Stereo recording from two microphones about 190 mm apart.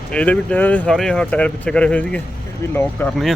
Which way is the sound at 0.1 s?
5° left (ahead or behind).